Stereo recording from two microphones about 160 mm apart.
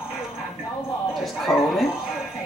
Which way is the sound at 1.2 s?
Centre (ahead or behind).